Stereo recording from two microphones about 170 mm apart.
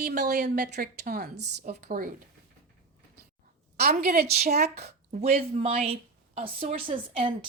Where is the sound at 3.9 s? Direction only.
60° right (ahead or behind).